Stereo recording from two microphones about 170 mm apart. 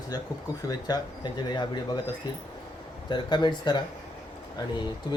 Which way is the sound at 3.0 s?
25° left (ahead or behind).